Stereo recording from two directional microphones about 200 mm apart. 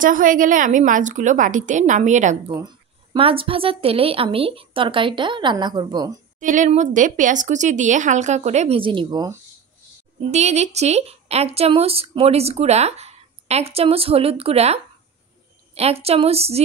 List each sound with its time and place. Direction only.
0.0 s speech: 40° right (ahead or behind)
2.5 s a woman's voice: 20° right (ahead or behind)
6.4 s speech: 40° right (ahead or behind); by 9.3 s 20° right (ahead or behind)
10.3 s speech: 35° right (ahead or behind)